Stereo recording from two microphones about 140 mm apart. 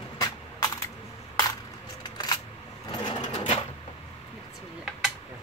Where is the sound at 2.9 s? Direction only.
40° left (ahead or behind).